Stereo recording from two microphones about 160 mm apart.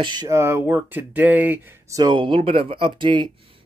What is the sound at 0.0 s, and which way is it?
Speech, 30° right (ahead or behind).